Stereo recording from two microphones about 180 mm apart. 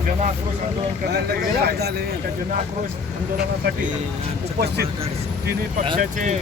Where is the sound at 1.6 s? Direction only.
60° right (ahead or behind).